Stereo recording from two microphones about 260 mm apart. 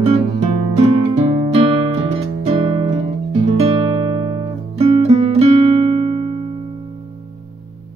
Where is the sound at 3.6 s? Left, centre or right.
Centre.